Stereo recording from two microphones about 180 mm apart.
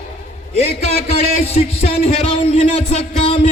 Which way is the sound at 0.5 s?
35° left (ahead or behind).